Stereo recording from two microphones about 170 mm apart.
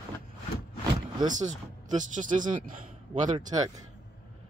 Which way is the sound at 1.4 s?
45° right (ahead or behind).